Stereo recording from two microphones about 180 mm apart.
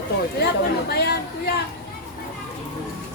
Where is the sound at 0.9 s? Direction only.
65° left (ahead or behind).